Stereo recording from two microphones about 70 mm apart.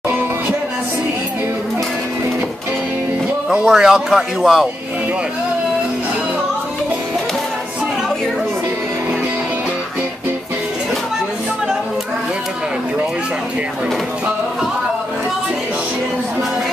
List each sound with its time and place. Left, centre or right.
3.6 s speech: centre